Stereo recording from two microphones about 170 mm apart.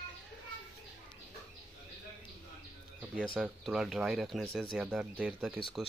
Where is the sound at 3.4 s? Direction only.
5° right (ahead or behind).